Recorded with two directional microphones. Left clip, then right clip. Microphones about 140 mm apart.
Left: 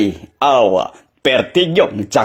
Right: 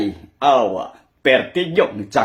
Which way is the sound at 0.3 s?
45° left (ahead or behind).